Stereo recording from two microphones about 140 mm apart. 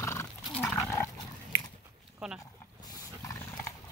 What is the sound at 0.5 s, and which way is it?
Dog, 10° left (ahead or behind).